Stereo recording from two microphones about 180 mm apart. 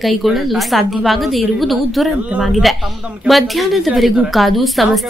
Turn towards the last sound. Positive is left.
turn(degrees=0)  # may be behind; listen again after turning